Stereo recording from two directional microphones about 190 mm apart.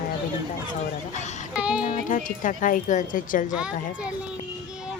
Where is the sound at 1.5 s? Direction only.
5° right (ahead or behind).